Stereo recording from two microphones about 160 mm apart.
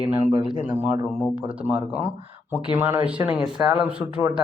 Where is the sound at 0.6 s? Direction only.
10° right (ahead or behind).